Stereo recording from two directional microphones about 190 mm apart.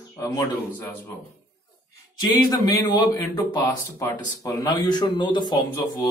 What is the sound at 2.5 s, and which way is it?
Speech, 20° left (ahead or behind).